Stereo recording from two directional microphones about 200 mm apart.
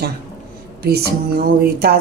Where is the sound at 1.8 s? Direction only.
50° right (ahead or behind).